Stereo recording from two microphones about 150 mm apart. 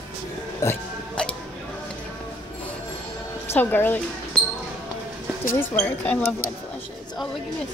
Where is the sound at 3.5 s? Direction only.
15° left (ahead or behind).